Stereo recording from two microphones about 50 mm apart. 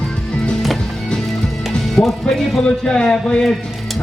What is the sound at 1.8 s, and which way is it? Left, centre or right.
Speech, centre.